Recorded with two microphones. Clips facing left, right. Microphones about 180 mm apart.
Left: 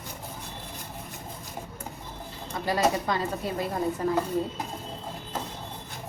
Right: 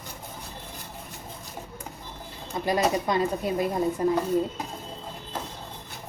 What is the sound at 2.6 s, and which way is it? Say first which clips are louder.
Speech: right 1 dB; 20° right (ahead or behind).